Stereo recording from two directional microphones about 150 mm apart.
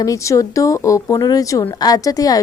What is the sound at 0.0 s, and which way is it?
A woman's voice, 20° left (ahead or behind).